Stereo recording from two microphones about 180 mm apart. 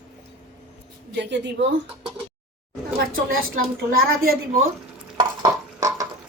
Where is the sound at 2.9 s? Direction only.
55° right (ahead or behind).